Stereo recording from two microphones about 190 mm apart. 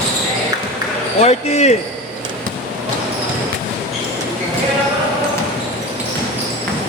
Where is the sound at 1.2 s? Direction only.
35° left (ahead or behind).